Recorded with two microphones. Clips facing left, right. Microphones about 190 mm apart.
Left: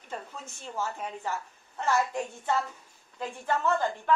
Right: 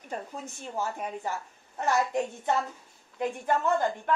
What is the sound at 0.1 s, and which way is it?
A woman's voice, 15° right (ahead or behind).